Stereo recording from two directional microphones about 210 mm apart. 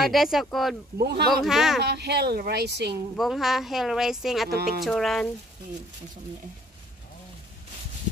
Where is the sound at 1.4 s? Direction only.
Centre (ahead or behind).